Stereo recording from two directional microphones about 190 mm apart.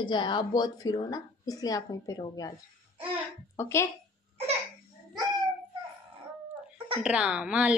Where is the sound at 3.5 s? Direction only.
15° left (ahead or behind).